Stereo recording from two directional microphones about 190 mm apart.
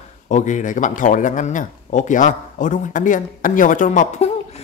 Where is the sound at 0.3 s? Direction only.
40° left (ahead or behind).